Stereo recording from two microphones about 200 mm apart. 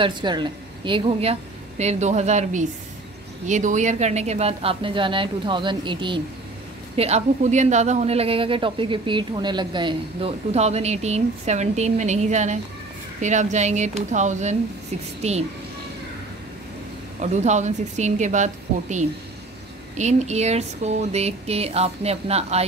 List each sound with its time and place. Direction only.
0.0 s speech: 20° right (ahead or behind)
17.2 s speech: 35° right (ahead or behind)